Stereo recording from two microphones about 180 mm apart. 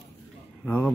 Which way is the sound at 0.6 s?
10° left (ahead or behind).